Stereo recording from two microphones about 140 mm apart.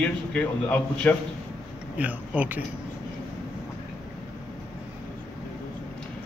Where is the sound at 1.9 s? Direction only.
10° right (ahead or behind).